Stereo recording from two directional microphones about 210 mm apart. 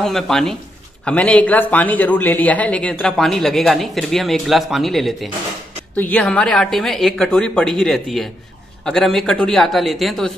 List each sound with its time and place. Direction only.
0.0 s speech: centre (ahead or behind)